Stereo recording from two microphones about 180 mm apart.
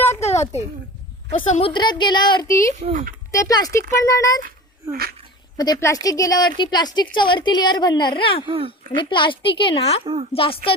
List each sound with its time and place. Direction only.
0.0 s a sound: 15° left (ahead or behind)
1.3 s speech: 40° left (ahead or behind)
1.7 s a woman's voice: 25° left (ahead or behind)
4.4 s speech: 55° right (ahead or behind)
5.5 s a woman's voice: 20° left (ahead or behind)
8.4 s a woman's voice: 30° right (ahead or behind)
9.0 s a woman's voice: 25° left (ahead or behind)
10.0 s a woman's voice: 30° right (ahead or behind)
10.3 s speech: 30° left (ahead or behind)